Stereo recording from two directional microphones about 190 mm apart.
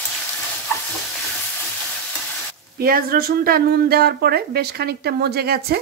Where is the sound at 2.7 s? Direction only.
50° right (ahead or behind).